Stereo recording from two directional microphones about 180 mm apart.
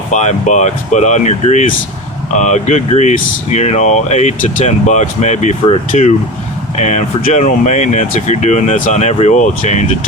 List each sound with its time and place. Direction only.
0.1 s speech: 40° left (ahead or behind)